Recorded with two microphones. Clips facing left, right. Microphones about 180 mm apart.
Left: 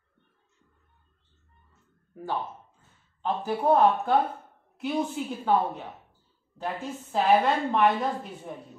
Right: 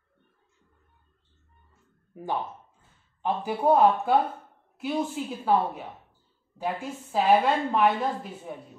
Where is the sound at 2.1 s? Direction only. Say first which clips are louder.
Right 1 dB; 15° right (ahead or behind).